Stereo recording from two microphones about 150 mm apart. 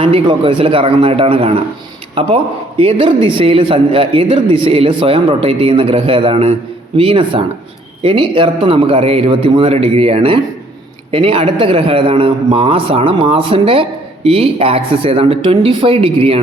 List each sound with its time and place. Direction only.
0.0 s a man's voice: 35° right (ahead or behind)